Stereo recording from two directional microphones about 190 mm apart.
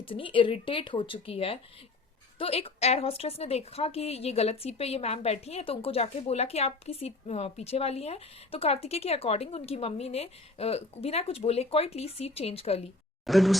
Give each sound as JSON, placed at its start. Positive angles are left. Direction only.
{"t": 0.0, "sound": "a woman's voice", "side_deg": 25}
{"t": 13.2, "sound": "speech", "side_deg": 0}